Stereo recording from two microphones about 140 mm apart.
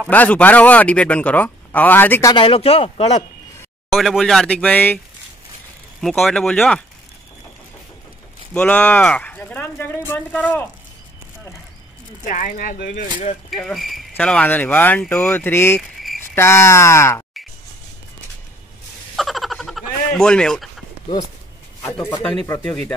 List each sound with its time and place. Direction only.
0.1 s speech: 10° left (ahead or behind)
2.3 s speech: 40° left (ahead or behind)
3.9 s speech: centre (ahead or behind)
8.5 s speech: 10° left (ahead or behind)
12.3 s speech: 75° left (ahead or behind)
13.5 s speech: centre (ahead or behind); by 17.2 s 20° left (ahead or behind)
19.1 s a sound: centre (ahead or behind)
21.8 s speech: 15° left (ahead or behind)